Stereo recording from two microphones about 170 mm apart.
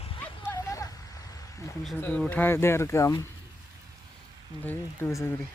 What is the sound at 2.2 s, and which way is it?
Speech, 10° left (ahead or behind).